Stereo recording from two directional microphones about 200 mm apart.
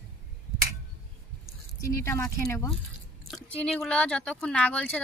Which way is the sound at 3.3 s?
5° left (ahead or behind).